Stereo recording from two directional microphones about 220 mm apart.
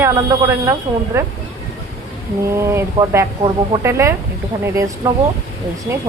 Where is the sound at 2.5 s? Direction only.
10° right (ahead or behind).